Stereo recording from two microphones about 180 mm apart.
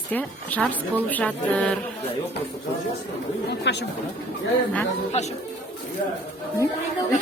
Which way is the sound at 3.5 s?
70° left (ahead or behind).